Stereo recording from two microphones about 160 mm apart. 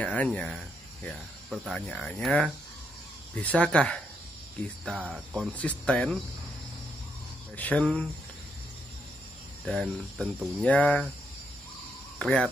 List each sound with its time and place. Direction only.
0.0 s speech: 10° left (ahead or behind)
4.9 s speech: 10° right (ahead or behind)
5.5 s speech: 10° left (ahead or behind)
7.5 s speech: 10° left (ahead or behind)
9.7 s speech: 5° left (ahead or behind)
12.2 s speech: 5° left (ahead or behind)